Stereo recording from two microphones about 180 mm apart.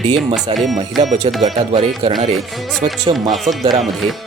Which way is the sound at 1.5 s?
30° right (ahead or behind).